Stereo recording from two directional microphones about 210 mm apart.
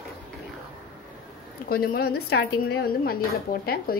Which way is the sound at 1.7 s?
45° left (ahead or behind).